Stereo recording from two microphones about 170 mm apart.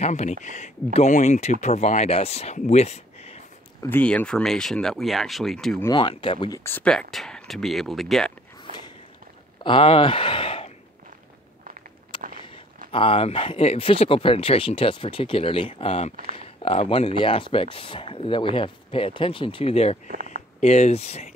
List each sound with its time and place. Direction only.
0.0 s speech: 40° left (ahead or behind)
3.9 s speech: 10° left (ahead or behind)
5.9 s speech: 30° left (ahead or behind)
6.6 s speech: 10° left (ahead or behind)
9.6 s speech: 30° left (ahead or behind)
12.1 s a sound: 30° left (ahead or behind)
12.9 s speech: 35° left (ahead or behind)